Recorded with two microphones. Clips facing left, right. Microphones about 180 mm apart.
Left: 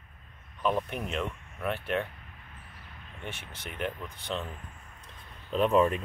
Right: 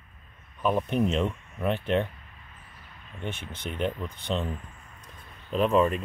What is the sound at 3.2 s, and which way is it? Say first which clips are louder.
Speech: right 6 dB; 20° right (ahead or behind).